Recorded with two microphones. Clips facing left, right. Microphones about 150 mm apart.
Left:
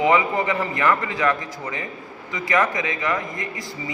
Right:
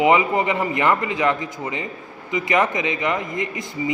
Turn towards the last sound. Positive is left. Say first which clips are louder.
# right 2 dB
turn(degrees=-20)  # may be behind; listen again after turning